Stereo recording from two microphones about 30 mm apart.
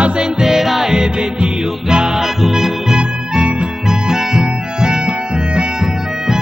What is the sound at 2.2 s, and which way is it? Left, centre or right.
Music, centre.